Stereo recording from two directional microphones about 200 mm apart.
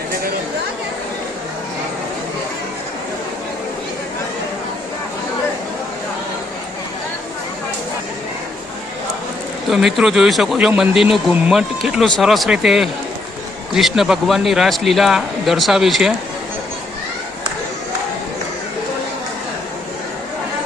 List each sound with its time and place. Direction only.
9.6 s a man's voice: centre (ahead or behind)